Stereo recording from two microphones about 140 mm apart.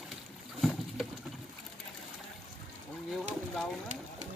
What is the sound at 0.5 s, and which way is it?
Boat, centre (ahead or behind).